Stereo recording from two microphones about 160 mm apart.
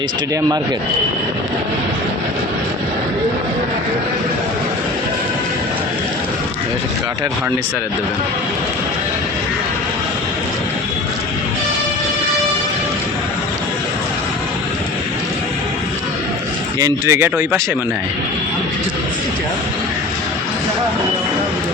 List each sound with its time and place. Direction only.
16.8 s speech: 15° right (ahead or behind)